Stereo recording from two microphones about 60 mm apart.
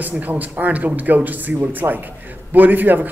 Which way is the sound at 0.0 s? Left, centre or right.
Right.